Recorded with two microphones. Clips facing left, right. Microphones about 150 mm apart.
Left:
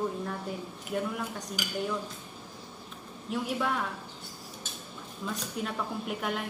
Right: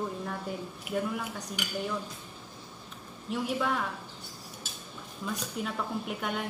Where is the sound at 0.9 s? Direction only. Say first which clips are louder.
Even; centre (ahead or behind).